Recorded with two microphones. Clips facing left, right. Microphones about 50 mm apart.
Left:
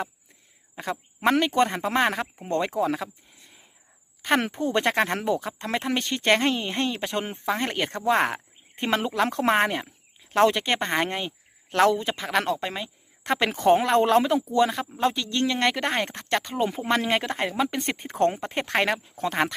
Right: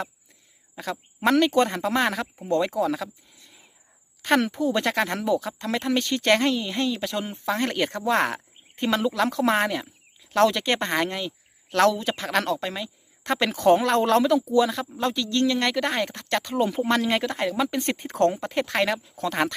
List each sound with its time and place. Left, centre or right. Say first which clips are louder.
0.8 s speech: even; left
2.4 s speech: right 2 dB; left; by 6.4 s centre
6.4 s speech: right 1 dB; left
7.4 s speech: right 3 dB; centre
8.7 s speech: right 1 dB; left
11.8 s speech: even; centre